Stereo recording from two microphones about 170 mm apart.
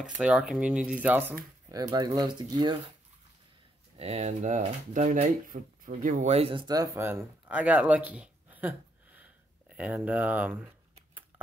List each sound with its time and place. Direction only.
0.0 s speech: 5° right (ahead or behind)
1.7 s speech: 20° right (ahead or behind)
4.0 s speech: 40° right (ahead or behind)
6.7 s speech: 15° right (ahead or behind)